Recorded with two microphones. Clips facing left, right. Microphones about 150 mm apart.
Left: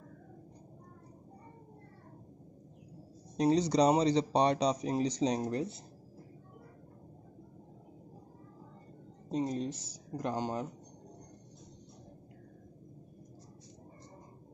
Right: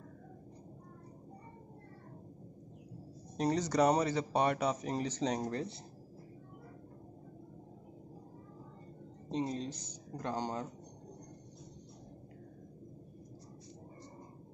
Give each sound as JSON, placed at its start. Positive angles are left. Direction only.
{"t": 3.3, "sound": "speech", "side_deg": 15}
{"t": 9.4, "sound": "speech", "side_deg": 5}